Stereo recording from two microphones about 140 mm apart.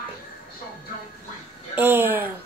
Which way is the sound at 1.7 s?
15° right (ahead or behind).